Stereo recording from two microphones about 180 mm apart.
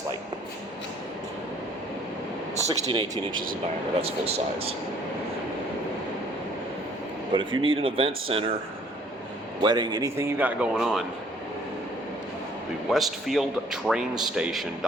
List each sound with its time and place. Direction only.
2.7 s speech: 25° right (ahead or behind)
7.3 s speech: 30° right (ahead or behind)
9.6 s a man's voice: 25° right (ahead or behind); by 11.0 s centre (ahead or behind)
12.9 s a man's voice: centre (ahead or behind)